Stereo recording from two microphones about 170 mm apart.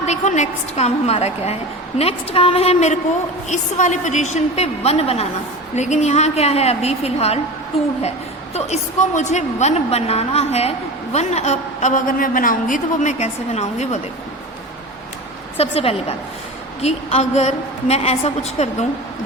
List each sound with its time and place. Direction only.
0.0 s a woman's voice: 40° left (ahead or behind)
8.5 s a woman's voice: 40° left (ahead or behind)
15.5 s a woman's voice: 35° left (ahead or behind)